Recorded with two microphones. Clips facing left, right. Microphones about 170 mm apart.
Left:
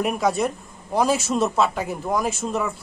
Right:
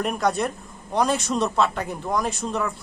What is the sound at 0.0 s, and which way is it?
A man's voice, 5° left (ahead or behind).